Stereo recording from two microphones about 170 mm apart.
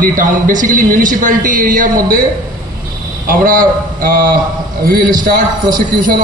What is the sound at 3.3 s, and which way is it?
A man's voice, 55° right (ahead or behind).